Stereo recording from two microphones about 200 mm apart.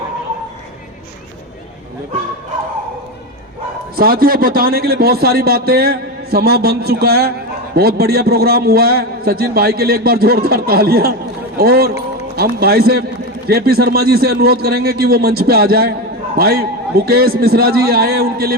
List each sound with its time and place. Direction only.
3.9 s a man's voice: 45° right (ahead or behind)